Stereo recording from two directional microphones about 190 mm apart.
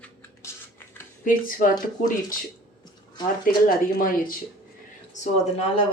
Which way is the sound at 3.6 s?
45° left (ahead or behind).